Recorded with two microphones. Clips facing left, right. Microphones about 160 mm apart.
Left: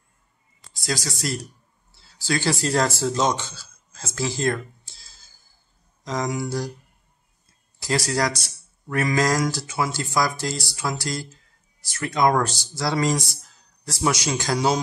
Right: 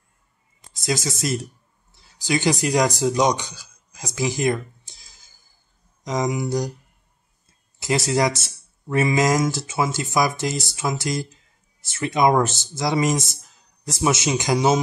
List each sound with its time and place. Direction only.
0.7 s a man's voice: 20° right (ahead or behind)
7.8 s a man's voice: 20° right (ahead or behind)